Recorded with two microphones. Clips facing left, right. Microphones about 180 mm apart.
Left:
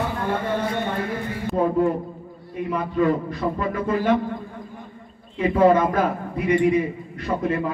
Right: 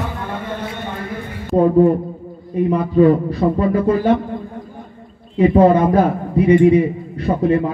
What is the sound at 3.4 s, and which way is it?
Speech, 35° right (ahead or behind).